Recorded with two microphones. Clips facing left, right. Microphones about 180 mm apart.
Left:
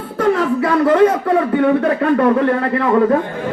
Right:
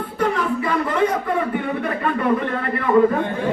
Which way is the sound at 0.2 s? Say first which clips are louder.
Left 6 dB; 80° left.